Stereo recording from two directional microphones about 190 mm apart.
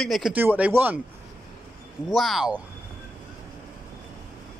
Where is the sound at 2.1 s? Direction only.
Centre (ahead or behind).